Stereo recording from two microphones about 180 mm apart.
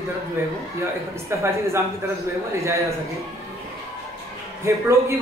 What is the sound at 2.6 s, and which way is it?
Speech, 15° right (ahead or behind).